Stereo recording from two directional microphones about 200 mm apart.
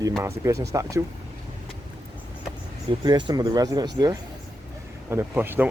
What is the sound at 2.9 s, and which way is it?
Speech, 20° right (ahead or behind).